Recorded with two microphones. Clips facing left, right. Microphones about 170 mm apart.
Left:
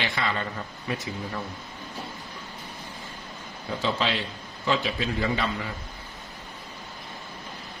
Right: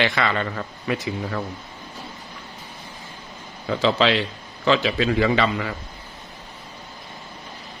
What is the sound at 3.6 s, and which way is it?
A man's voice, 90° right.